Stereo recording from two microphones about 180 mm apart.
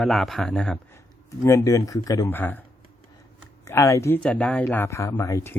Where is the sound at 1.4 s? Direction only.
20° left (ahead or behind).